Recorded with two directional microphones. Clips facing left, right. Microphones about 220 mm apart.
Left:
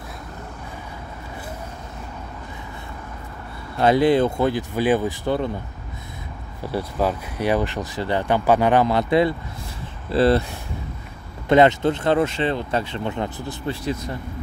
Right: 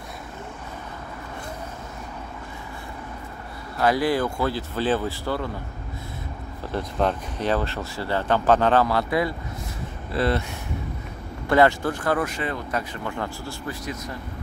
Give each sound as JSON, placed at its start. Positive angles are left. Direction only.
{"t": 3.7, "sound": "speech", "side_deg": 25}
{"t": 6.7, "sound": "speech", "side_deg": 5}
{"t": 11.4, "sound": "speech", "side_deg": 20}